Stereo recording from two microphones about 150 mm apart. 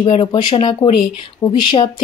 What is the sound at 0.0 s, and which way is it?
Speech, 35° left (ahead or behind).